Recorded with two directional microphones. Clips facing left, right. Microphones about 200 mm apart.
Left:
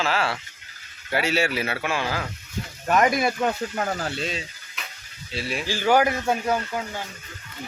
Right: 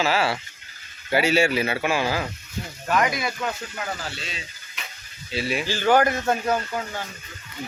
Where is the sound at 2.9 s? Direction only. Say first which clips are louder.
Left 3 dB; 50° left (ahead or behind).